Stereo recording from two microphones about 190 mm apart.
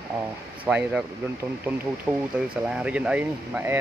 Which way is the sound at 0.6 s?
5° right (ahead or behind).